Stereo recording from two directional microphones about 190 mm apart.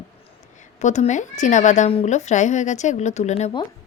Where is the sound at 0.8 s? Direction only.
40° left (ahead or behind).